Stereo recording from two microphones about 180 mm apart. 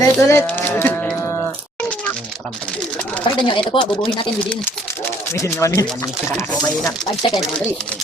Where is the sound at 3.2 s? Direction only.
25° left (ahead or behind).